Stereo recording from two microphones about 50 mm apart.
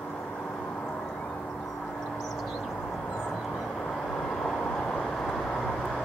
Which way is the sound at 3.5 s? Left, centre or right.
Centre.